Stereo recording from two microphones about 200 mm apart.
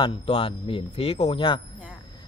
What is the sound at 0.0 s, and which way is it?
Speech, 25° left (ahead or behind).